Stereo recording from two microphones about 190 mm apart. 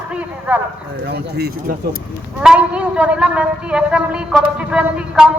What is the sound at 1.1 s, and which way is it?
Speech, 60° right (ahead or behind).